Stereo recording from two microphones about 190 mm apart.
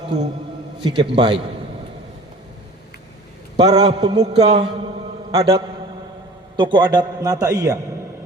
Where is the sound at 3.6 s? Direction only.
20° right (ahead or behind).